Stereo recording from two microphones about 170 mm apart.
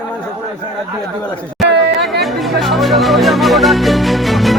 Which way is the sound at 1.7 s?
85° right.